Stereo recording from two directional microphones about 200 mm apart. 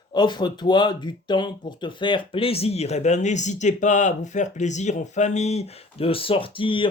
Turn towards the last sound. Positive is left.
turn(degrees=25)  # may be behind; listen again after turning